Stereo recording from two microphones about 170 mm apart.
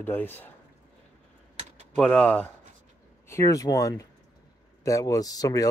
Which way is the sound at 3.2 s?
20° left (ahead or behind).